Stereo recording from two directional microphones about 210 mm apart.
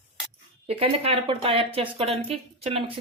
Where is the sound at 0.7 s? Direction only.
30° right (ahead or behind).